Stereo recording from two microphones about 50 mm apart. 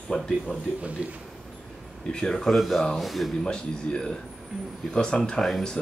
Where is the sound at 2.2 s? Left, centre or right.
Centre.